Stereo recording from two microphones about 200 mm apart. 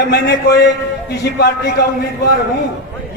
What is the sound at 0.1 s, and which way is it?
A man's voice, 55° left (ahead or behind).